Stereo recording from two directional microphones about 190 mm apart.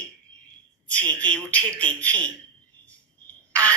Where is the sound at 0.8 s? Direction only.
5° left (ahead or behind).